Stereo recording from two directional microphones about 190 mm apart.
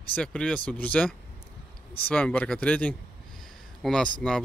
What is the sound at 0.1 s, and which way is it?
Speech, 5° left (ahead or behind).